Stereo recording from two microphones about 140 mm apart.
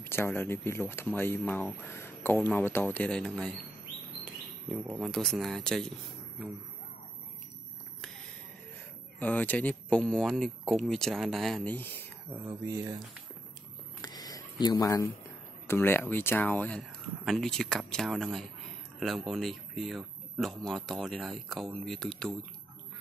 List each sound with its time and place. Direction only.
0.0 s speech: 15° left (ahead or behind)
9.2 s speech: 10° left (ahead or behind)
12.4 s speech: 25° right (ahead or behind)
14.0 s a sound: 30° left (ahead or behind)
15.6 s speech: 15° left (ahead or behind)